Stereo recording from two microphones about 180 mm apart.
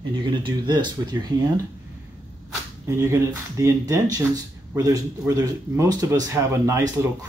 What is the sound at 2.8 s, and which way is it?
Speech, 15° right (ahead or behind).